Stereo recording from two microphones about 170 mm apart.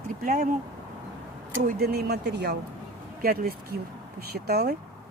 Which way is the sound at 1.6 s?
65° right (ahead or behind).